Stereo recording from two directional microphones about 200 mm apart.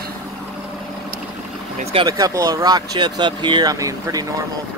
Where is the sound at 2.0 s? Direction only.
15° right (ahead or behind).